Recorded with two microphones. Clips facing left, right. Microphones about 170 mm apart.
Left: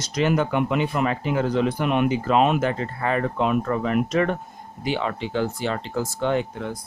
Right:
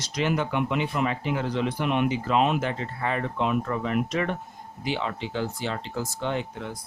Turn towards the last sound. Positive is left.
turn(degrees=55)  # may be behind; listen again after turning